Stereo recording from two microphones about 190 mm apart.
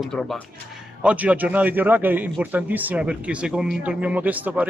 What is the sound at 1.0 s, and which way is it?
A man's voice, 5° right (ahead or behind).